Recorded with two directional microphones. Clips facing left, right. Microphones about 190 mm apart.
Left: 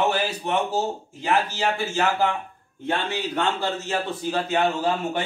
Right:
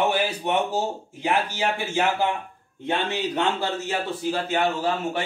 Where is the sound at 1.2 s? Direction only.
15° right (ahead or behind).